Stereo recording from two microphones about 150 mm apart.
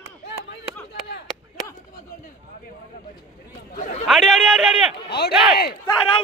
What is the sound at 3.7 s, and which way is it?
Chatter, 60° left (ahead or behind).